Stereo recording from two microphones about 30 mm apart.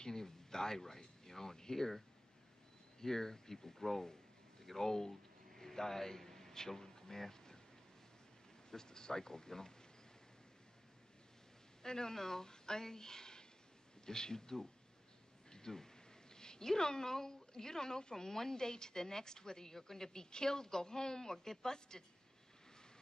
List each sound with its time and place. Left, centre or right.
0.0 s speech: centre
4.6 s a sound: centre
8.6 s speech: left
11.8 s speech: left